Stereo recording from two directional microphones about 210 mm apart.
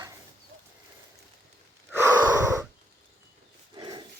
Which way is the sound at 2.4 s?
15° right (ahead or behind).